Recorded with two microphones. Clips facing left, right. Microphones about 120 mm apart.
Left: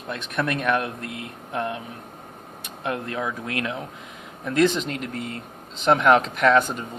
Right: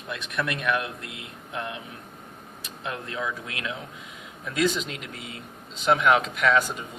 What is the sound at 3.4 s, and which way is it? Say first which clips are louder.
Speech: left 6 dB; 45° left (ahead or behind).